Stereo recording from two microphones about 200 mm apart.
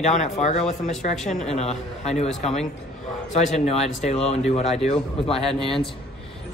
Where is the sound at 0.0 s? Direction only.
35° left (ahead or behind).